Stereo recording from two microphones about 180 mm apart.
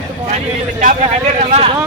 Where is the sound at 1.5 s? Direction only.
35° right (ahead or behind).